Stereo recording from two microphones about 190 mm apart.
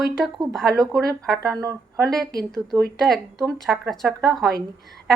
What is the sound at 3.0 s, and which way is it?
A woman's voice, centre (ahead or behind).